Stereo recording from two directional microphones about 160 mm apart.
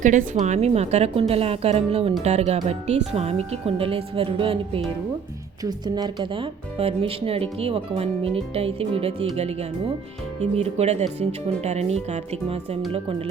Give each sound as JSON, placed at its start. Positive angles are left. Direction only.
{"t": 0.0, "sound": "speech", "side_deg": -55}